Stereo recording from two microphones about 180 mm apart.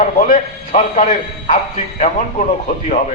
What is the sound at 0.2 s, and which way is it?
A man's voice, 50° left (ahead or behind).